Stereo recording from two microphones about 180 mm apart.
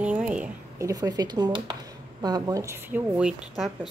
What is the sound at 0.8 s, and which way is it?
Speech, 20° right (ahead or behind).